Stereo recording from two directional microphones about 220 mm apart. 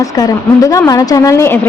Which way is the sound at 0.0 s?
15° left (ahead or behind).